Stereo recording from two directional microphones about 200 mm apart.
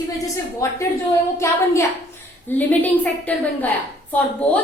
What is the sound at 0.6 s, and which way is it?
A woman's voice, 15° left (ahead or behind).